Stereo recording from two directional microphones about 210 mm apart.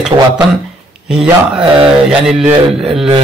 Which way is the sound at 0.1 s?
20° right (ahead or behind).